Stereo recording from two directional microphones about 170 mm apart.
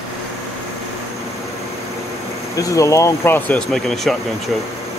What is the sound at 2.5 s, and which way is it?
Speech, 20° left (ahead or behind).